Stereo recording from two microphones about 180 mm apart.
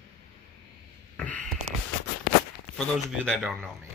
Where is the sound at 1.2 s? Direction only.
5° left (ahead or behind).